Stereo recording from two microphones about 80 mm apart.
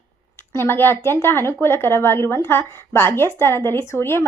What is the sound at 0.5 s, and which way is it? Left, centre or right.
A woman's voice, left.